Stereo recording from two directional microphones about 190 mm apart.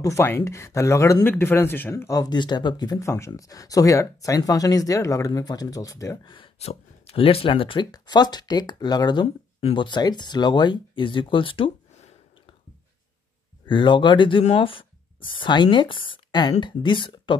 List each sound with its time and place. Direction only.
0.0 s speech: 15° left (ahead or behind)
13.7 s speech: 25° left (ahead or behind)